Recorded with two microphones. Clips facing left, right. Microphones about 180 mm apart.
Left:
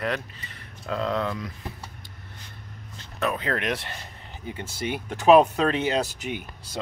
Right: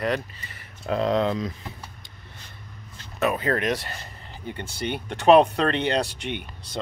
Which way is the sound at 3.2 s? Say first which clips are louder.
Right 3 dB; 5° right (ahead or behind).